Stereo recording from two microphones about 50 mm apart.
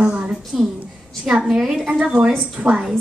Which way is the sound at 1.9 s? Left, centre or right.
Centre.